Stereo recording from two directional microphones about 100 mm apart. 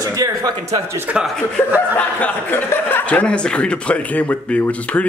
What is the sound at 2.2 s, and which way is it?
Speech, 20° left (ahead or behind).